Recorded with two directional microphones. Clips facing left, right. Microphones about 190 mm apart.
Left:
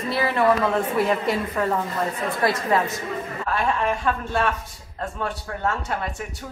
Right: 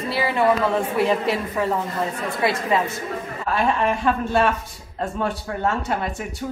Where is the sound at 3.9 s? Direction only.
10° right (ahead or behind).